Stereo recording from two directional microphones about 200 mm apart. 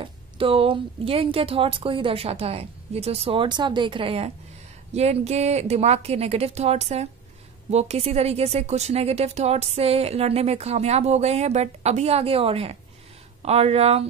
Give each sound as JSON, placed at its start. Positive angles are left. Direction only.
{"t": 0.0, "sound": "a woman's voice", "side_deg": -25}